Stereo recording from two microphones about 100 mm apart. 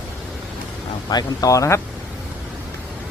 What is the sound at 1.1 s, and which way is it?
Speech, 40° left (ahead or behind).